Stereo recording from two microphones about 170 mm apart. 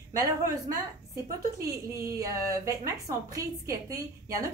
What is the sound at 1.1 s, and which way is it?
Speech, 20° right (ahead or behind).